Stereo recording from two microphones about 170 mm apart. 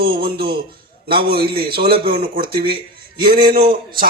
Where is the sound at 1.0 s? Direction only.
60° right (ahead or behind).